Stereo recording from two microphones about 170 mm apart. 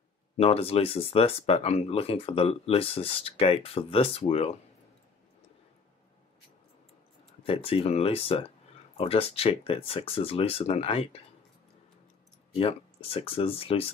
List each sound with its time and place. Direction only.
0.4 s speech: 35° left (ahead or behind)
7.4 s speech: 35° left (ahead or behind)
12.5 s speech: 35° left (ahead or behind)